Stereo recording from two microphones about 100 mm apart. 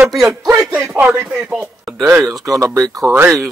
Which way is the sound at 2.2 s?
35° right (ahead or behind).